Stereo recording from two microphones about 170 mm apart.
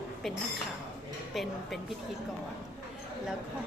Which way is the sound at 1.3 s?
Centre (ahead or behind).